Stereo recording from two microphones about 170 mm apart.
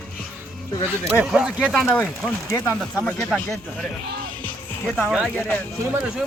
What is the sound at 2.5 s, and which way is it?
Speech, 15° left (ahead or behind).